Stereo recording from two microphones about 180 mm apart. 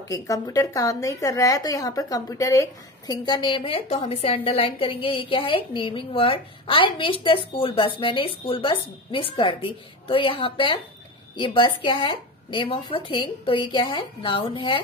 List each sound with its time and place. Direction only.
0.1 s a woman's voice: 20° left (ahead or behind)